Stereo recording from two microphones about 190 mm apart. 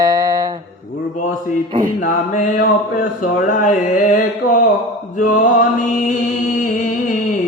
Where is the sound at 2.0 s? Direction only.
45° left (ahead or behind).